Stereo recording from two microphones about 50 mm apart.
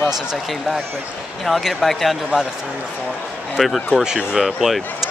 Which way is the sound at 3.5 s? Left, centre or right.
Centre.